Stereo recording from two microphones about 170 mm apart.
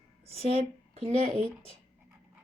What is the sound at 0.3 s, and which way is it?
A woman's voice, 35° right (ahead or behind).